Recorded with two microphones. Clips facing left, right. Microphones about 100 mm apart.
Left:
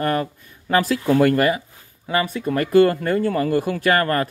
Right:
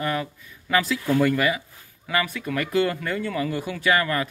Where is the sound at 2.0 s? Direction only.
30° left (ahead or behind).